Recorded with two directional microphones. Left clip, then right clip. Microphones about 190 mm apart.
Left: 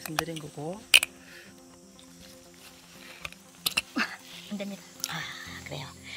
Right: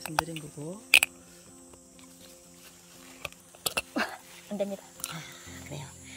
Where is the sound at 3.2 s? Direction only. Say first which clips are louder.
Right 2 dB; 50° right (ahead or behind).